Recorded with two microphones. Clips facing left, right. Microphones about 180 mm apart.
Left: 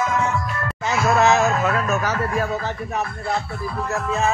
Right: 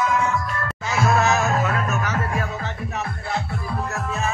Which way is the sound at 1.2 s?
25° left (ahead or behind).